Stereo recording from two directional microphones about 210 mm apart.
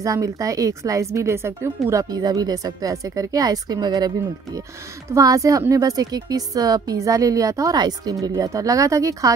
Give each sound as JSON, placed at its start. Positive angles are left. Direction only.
{"t": 0.0, "sound": "speech", "side_deg": -15}
{"t": 5.1, "sound": "speech", "side_deg": -15}